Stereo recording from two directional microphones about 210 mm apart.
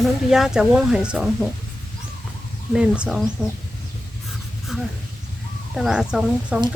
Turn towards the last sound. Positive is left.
turn(degrees=-5)  # may be behind; listen again after turning